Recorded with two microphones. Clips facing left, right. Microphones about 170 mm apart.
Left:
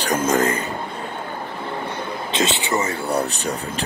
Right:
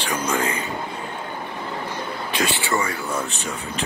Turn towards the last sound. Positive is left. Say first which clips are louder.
# left 3 dB
turn(degrees=35)  # may be behind; listen again after turning